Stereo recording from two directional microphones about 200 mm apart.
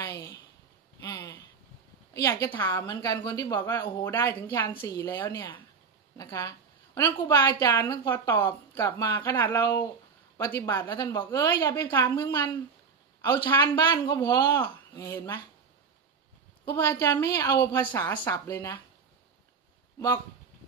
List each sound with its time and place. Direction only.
0.0 s a sound: 15° left (ahead or behind)
2.2 s a woman's voice: 15° left (ahead or behind)
16.6 s a woman's voice: 10° left (ahead or behind)